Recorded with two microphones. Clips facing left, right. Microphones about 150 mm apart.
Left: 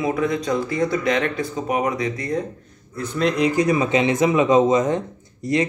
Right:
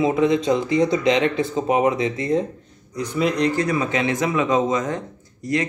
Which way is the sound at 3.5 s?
15° left (ahead or behind).